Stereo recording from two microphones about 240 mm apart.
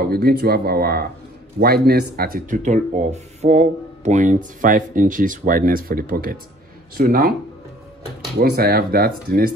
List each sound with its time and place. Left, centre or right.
0.1 s speech: right
8.4 s speech: right